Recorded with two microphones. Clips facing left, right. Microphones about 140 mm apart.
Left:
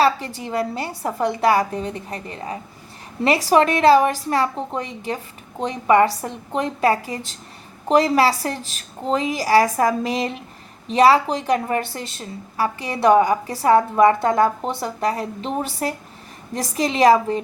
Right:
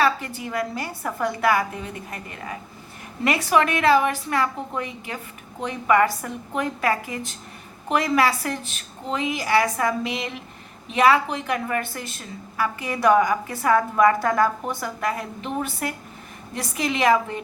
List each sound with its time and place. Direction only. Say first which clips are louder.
0.0 s a woman's voice: left 3 dB; 30° left (ahead or behind)